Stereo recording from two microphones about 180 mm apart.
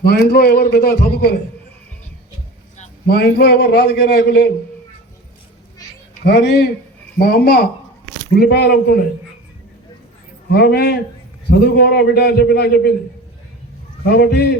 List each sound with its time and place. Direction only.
0.0 s a man's voice: 60° left (ahead or behind)
3.1 s a man's voice: 60° left (ahead or behind)
6.2 s a man's voice: 65° left (ahead or behind)
10.5 s a man's voice: 65° left (ahead or behind)
14.1 s a man's voice: 60° left (ahead or behind)